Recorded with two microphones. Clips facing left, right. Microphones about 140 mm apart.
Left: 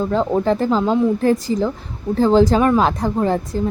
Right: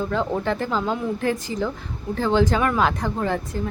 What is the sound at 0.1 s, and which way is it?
Speech, 35° left (ahead or behind).